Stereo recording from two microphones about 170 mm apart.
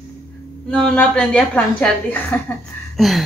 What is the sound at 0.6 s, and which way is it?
A woman's voice, 5° left (ahead or behind).